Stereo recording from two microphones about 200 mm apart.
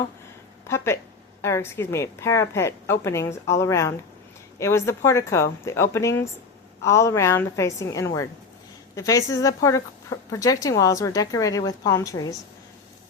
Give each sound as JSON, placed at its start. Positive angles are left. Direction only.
{"t": 1.4, "sound": "speech", "side_deg": 15}